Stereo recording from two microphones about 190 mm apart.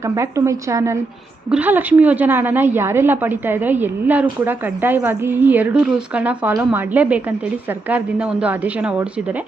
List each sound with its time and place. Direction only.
0.0 s a woman's voice: 15° right (ahead or behind)